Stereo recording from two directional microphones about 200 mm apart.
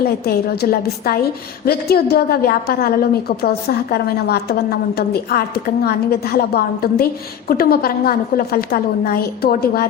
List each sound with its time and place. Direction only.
0.3 s a woman's voice: 50° left (ahead or behind)